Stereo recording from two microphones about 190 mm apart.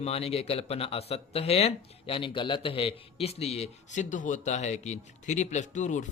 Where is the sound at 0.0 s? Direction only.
30° left (ahead or behind).